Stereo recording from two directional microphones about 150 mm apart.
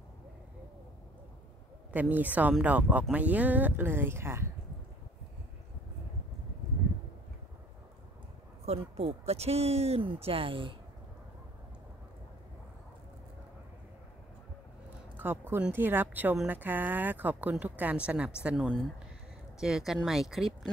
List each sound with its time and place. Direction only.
1.9 s a woman's voice: 10° right (ahead or behind)
8.6 s speech: 40° right (ahead or behind)
15.1 s a woman's voice: 15° right (ahead or behind)